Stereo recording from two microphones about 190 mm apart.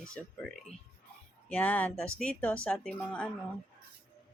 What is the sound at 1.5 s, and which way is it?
Speech, 10° left (ahead or behind).